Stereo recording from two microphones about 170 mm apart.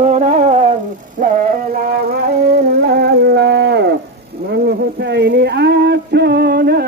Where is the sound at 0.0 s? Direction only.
40° right (ahead or behind).